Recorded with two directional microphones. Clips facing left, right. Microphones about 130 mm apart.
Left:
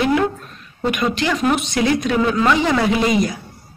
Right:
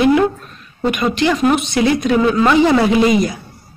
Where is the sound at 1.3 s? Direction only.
10° right (ahead or behind).